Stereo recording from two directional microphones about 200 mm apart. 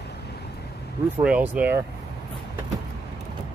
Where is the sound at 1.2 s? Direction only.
5° right (ahead or behind).